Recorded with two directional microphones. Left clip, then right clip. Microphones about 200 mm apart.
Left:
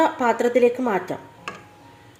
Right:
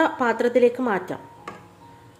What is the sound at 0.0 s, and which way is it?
A woman's voice, 5° left (ahead or behind).